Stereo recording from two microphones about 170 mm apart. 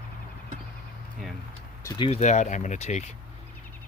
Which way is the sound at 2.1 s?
45° left (ahead or behind).